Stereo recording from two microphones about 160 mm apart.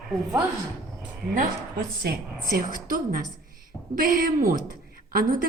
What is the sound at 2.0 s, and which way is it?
Speech, 75° right (ahead or behind).